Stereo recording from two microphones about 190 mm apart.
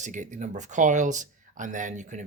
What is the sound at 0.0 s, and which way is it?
Speech, 40° right (ahead or behind).